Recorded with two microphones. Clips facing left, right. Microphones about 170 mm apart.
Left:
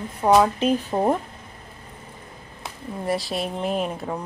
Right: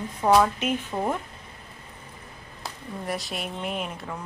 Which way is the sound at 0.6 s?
35° left (ahead or behind).